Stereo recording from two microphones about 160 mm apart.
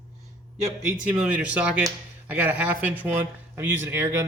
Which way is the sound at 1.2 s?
10° right (ahead or behind).